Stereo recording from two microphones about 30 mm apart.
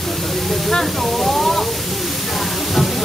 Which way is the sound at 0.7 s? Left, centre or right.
Centre.